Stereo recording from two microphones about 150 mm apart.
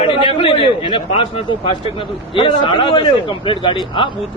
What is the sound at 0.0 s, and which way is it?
A man's voice, 35° left (ahead or behind).